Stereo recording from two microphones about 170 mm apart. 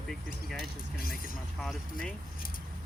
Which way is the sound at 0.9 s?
60° left (ahead or behind).